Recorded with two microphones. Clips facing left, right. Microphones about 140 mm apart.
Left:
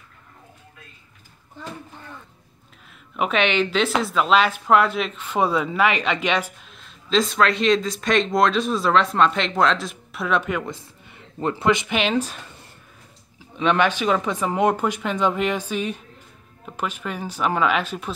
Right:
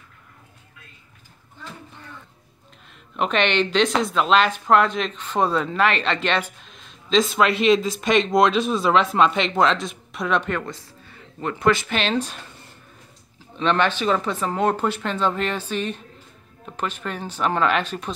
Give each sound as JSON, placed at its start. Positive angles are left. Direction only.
{"t": 2.9, "sound": "speech", "side_deg": 5}
{"t": 10.7, "sound": "speech", "side_deg": 20}
{"t": 13.6, "sound": "speech", "side_deg": 10}